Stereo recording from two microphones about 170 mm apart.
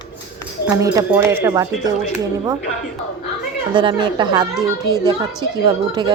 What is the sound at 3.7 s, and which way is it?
Speech, 30° right (ahead or behind).